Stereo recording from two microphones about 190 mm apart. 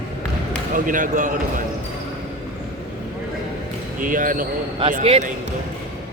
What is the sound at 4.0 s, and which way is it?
Speech, 45° right (ahead or behind).